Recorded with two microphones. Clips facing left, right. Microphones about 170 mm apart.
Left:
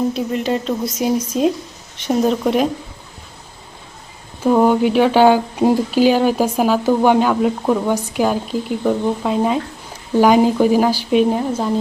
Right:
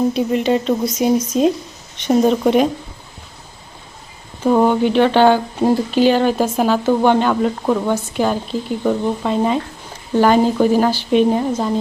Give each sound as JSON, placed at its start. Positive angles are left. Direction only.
{"t": 0.1, "sound": "speech", "side_deg": 0}
{"t": 4.4, "sound": "speech", "side_deg": 5}